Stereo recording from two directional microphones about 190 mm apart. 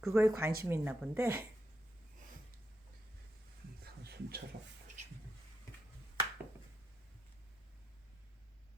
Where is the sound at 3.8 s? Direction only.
55° right (ahead or behind).